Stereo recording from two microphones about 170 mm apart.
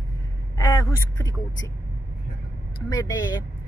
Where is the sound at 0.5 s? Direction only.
25° left (ahead or behind).